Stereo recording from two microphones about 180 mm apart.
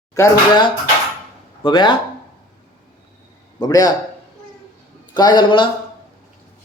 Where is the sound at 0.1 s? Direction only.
20° left (ahead or behind).